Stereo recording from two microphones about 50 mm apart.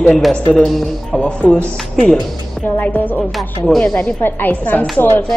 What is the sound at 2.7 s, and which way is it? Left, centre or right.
Speech, left.